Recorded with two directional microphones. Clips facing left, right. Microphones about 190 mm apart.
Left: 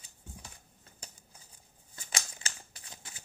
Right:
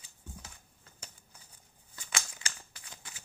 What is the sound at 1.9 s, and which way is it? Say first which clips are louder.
Shuffling cards: right 1 dB; 25° left (ahead or behind).